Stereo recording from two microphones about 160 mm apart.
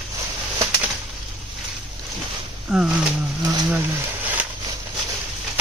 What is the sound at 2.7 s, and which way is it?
Speech, 5° right (ahead or behind).